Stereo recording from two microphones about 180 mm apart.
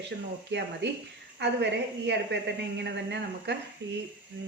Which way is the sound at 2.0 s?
75° right (ahead or behind).